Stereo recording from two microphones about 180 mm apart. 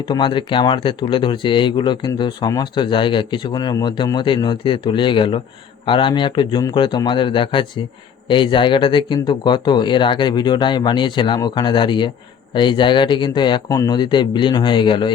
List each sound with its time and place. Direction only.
0.1 s speech: 25° left (ahead or behind)